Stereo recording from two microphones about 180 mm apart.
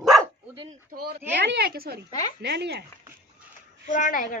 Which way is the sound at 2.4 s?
70° right (ahead or behind).